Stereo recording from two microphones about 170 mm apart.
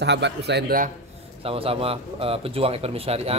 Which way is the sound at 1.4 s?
35° right (ahead or behind).